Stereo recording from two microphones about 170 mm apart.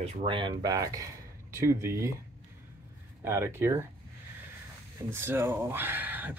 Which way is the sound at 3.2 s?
15° right (ahead or behind).